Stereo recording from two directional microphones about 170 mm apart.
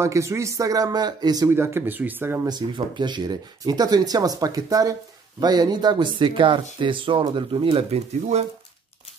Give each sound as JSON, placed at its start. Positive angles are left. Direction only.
{"t": 0.0, "sound": "speech", "side_deg": -15}
{"t": 2.4, "sound": "speech", "side_deg": -25}